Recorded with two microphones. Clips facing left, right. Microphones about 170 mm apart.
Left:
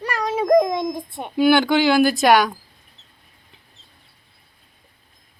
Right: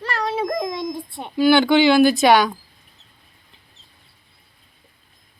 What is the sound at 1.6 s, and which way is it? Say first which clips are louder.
Speech: right 2 dB; 10° left (ahead or behind).